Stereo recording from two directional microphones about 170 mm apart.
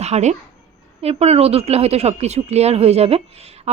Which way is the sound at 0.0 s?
40° right (ahead or behind).